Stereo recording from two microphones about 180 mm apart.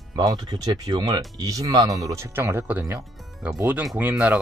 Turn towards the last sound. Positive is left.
turn(degrees=-10)  # may be behind; listen again after turning